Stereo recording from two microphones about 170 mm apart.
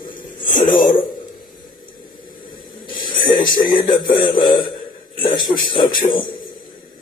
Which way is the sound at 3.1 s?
25° left (ahead or behind).